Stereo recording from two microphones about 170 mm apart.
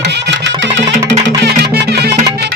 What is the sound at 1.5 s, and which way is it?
Music, 70° right (ahead or behind).